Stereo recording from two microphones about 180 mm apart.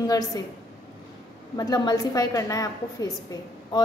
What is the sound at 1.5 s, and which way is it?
A woman's voice, 20° left (ahead or behind).